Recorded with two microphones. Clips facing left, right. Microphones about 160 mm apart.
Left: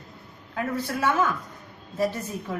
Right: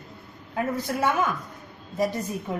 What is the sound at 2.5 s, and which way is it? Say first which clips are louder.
Speech: right 1 dB; 20° right (ahead or behind).